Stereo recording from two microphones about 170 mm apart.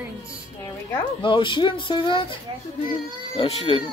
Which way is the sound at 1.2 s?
30° left (ahead or behind).